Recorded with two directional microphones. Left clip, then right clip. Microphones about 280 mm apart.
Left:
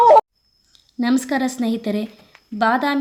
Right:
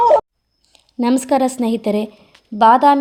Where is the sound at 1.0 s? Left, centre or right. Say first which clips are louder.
Right 5 dB; centre.